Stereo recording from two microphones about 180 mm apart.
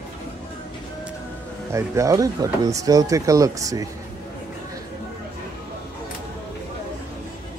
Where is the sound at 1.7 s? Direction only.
15° right (ahead or behind).